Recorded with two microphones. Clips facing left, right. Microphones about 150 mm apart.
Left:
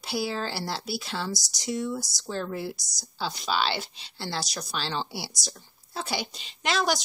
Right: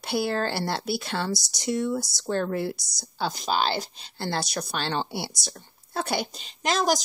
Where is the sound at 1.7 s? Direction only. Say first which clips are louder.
Right 4 dB; 55° right (ahead or behind).